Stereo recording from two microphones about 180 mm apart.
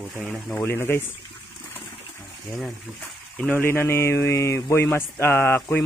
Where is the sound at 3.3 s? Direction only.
10° left (ahead or behind).